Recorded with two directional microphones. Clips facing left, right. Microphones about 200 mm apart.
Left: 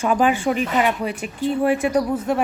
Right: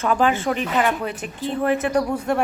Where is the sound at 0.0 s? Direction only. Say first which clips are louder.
Left 1 dB; 15° left (ahead or behind).